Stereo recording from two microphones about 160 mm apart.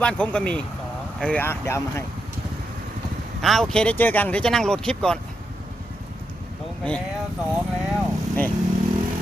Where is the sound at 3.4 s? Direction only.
Centre (ahead or behind).